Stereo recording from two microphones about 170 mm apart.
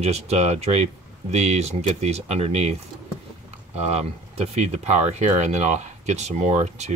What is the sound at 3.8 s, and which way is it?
Speech, 40° right (ahead or behind).